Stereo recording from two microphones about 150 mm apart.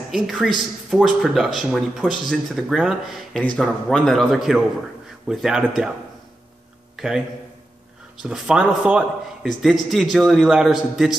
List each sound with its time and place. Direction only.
0.1 s speech: centre (ahead or behind)
7.0 s speech: 5° right (ahead or behind)